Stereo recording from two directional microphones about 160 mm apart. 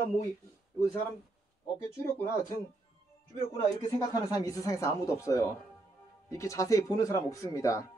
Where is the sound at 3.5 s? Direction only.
25° left (ahead or behind).